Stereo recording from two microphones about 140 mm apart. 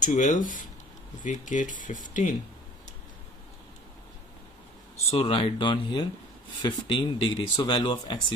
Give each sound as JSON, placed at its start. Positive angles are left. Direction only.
{"t": 0.0, "sound": "speech", "side_deg": 60}
{"t": 5.1, "sound": "speech", "side_deg": 40}